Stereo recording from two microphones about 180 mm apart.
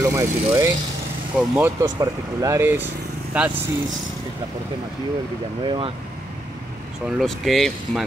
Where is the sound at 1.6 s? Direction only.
15° right (ahead or behind).